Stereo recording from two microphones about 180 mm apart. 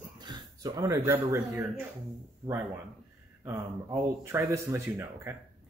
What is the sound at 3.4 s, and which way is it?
Speech, 15° right (ahead or behind).